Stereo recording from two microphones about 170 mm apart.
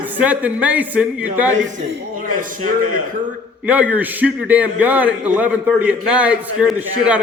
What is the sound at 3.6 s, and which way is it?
A man's voice, 10° right (ahead or behind).